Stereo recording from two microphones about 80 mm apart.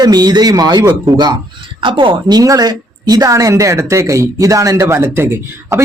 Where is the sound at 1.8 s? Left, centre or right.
Right.